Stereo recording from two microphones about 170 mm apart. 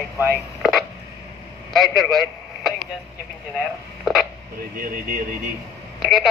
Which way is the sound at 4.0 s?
Centre (ahead or behind).